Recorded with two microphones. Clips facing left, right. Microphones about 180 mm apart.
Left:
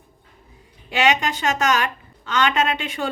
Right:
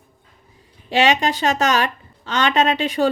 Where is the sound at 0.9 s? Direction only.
35° right (ahead or behind).